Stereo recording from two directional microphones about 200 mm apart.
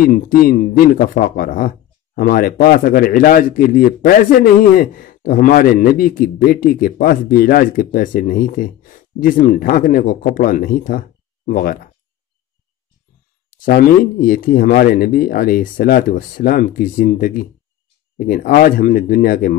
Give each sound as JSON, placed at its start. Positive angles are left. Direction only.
{"t": 0.0, "sound": "a man's voice", "side_deg": 45}
{"t": 13.5, "sound": "a man's voice", "side_deg": 45}